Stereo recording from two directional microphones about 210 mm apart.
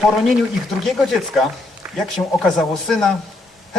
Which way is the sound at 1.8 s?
10° right (ahead or behind).